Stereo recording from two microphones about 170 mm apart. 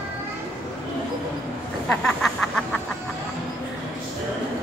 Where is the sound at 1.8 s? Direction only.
5° left (ahead or behind).